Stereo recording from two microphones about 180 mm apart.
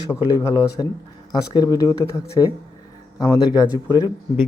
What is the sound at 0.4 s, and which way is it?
Speech, 20° left (ahead or behind).